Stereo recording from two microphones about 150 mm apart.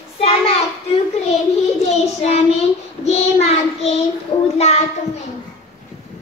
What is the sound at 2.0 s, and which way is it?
Child singing, 45° left (ahead or behind).